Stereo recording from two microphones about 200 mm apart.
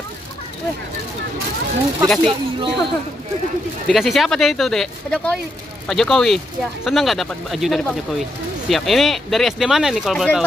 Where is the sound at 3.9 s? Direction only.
Centre (ahead or behind).